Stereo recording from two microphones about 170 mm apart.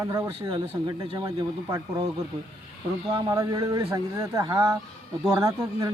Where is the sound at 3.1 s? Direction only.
20° right (ahead or behind).